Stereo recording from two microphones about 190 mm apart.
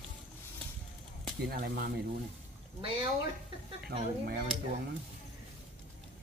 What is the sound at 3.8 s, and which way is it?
Speech, 55° right (ahead or behind).